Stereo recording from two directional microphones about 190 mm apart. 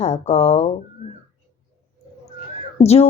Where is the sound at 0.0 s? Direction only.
35° left (ahead or behind).